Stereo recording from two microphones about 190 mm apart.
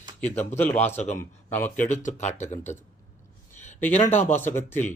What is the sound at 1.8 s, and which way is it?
Speech, 40° left (ahead or behind).